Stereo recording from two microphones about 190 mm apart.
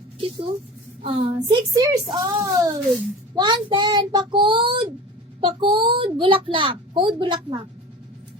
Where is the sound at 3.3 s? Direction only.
25° right (ahead or behind).